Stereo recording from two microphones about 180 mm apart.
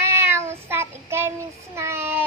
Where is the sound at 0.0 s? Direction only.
15° right (ahead or behind).